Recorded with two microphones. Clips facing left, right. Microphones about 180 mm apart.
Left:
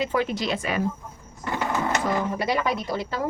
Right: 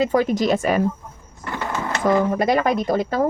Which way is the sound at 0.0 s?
40° right (ahead or behind).